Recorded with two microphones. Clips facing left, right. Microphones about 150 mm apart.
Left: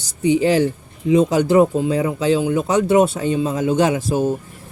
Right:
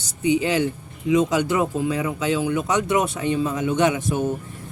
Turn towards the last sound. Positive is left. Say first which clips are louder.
# left 3 dB
turn(degrees=30)  # may be behind; listen again after turning